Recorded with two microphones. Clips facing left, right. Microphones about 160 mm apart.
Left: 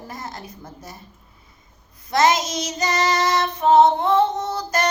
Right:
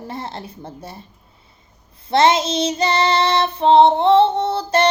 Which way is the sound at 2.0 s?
30° right (ahead or behind).